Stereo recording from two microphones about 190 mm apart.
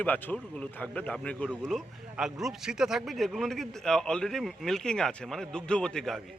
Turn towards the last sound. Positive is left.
turn(degrees=5)  # may be behind; listen again after turning